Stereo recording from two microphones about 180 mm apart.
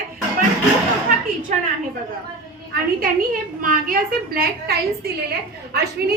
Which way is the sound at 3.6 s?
50° right (ahead or behind).